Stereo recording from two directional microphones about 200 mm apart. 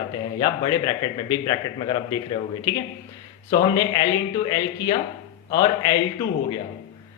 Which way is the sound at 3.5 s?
20° left (ahead or behind).